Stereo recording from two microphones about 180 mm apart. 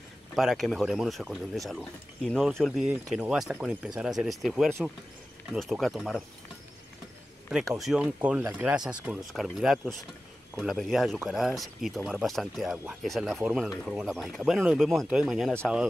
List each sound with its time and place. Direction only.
0.4 s speech: centre (ahead or behind)
7.7 s speech: centre (ahead or behind)